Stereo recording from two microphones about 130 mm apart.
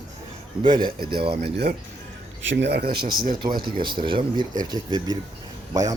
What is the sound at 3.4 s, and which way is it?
Speech, 35° right (ahead or behind).